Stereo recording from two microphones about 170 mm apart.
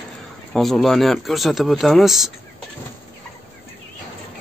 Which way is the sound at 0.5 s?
Centre (ahead or behind).